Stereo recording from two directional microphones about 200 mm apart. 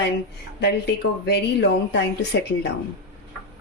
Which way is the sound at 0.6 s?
55° left (ahead or behind).